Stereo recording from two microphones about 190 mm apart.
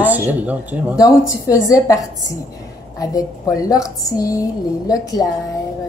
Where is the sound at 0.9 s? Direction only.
20° left (ahead or behind).